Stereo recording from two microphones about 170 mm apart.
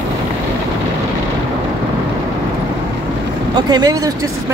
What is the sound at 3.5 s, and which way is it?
Speech, 20° right (ahead or behind).